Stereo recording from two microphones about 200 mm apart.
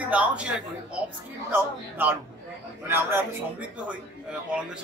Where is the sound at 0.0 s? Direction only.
5° right (ahead or behind).